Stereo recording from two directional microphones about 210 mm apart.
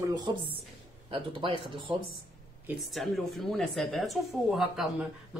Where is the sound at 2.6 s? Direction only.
5° right (ahead or behind).